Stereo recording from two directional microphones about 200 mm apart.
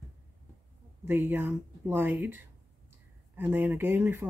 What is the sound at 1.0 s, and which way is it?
Speech, 10° right (ahead or behind).